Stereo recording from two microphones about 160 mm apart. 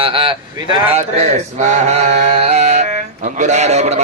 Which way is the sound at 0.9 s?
45° right (ahead or behind).